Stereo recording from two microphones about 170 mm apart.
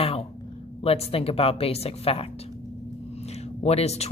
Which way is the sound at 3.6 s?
40° left (ahead or behind).